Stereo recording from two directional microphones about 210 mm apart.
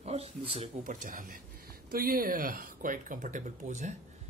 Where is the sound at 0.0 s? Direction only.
30° right (ahead or behind).